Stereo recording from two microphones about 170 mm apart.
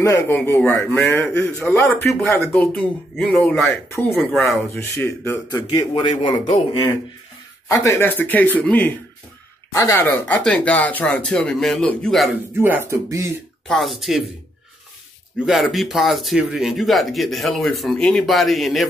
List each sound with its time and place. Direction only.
0.0 s a man's voice: 15° left (ahead or behind); by 4.6 s centre (ahead or behind)
4.7 s a man's voice: 15° left (ahead or behind)
5.7 s a man's voice: 25° left (ahead or behind)
7.6 s a man's voice: 20° left (ahead or behind)
12.5 s speech: 10° right (ahead or behind)
13.7 s speech: centre (ahead or behind)
15.3 s speech: centre (ahead or behind)